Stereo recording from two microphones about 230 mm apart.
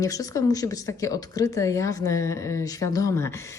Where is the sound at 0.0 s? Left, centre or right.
Centre.